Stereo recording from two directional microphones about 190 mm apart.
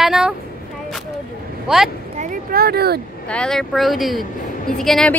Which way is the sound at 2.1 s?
45° right (ahead or behind).